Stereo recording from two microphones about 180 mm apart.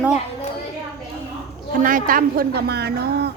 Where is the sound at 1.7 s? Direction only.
50° right (ahead or behind).